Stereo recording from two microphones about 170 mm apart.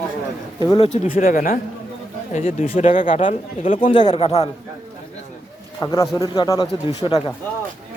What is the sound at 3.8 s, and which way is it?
Speech, 30° left (ahead or behind).